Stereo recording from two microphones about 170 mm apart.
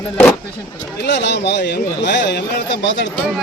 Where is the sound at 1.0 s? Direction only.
90° left.